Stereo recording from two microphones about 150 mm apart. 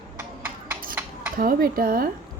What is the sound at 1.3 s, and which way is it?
Speech, 70° right (ahead or behind).